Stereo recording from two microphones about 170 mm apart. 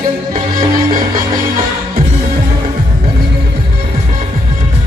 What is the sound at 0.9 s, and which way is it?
Music, 55° right (ahead or behind).